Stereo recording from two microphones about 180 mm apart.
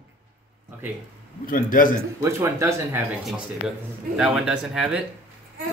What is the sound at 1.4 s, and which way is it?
Speech, 50° left (ahead or behind).